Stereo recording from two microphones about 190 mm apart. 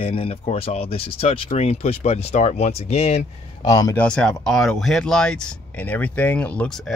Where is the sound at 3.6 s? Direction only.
20° left (ahead or behind).